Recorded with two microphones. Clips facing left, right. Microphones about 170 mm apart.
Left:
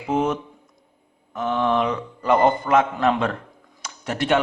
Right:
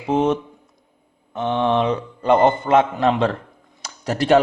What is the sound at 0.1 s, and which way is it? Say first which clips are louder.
A man's voice: right 4 dB; 25° right (ahead or behind).